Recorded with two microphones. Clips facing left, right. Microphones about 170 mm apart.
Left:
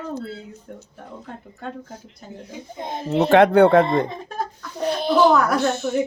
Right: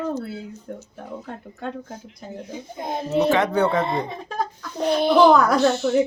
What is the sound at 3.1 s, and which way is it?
Speech, 60° left (ahead or behind).